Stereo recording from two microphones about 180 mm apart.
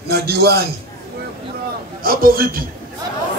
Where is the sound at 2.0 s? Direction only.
55° right (ahead or behind).